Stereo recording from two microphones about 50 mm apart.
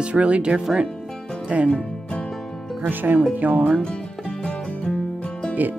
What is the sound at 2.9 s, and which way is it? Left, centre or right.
Speech, right.